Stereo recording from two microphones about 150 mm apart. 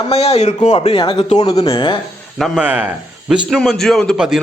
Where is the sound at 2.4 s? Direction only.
10° right (ahead or behind).